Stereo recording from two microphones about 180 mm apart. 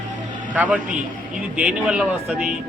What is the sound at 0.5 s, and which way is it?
A man's voice, 10° right (ahead or behind).